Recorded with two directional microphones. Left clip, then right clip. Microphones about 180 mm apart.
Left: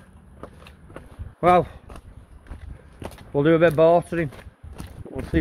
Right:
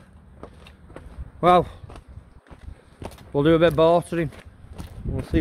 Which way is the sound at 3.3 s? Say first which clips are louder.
Even; 20° right (ahead or behind).